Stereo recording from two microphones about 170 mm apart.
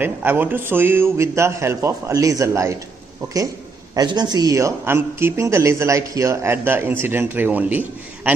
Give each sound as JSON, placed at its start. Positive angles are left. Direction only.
{"t": 0.0, "sound": "a man's voice", "side_deg": -10}
{"t": 3.9, "sound": "a man's voice", "side_deg": -25}